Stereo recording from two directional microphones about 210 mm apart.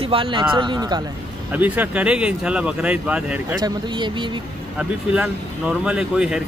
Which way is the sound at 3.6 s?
20° right (ahead or behind).